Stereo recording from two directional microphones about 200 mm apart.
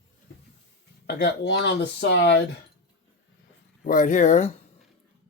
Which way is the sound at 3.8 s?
40° left (ahead or behind).